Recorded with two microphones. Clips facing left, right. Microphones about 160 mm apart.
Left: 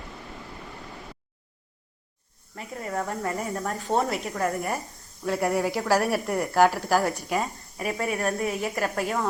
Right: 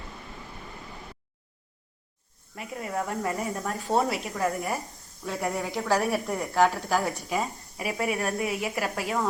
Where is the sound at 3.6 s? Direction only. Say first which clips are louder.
Even; centre (ahead or behind).